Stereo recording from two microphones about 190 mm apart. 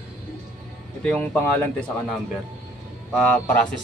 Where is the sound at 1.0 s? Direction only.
5° left (ahead or behind).